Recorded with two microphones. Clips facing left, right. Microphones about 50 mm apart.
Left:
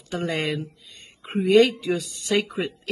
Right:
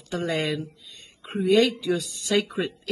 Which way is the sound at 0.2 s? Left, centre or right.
Left.